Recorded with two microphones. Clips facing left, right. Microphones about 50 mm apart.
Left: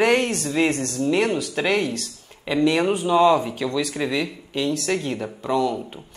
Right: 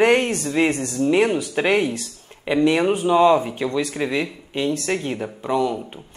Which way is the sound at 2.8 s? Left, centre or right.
Centre.